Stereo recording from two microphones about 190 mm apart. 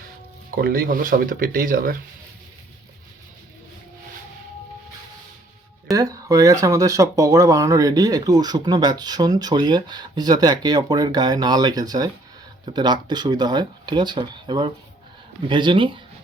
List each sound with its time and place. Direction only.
0.5 s speech: 50° right (ahead or behind)
5.9 s speech: 20° right (ahead or behind)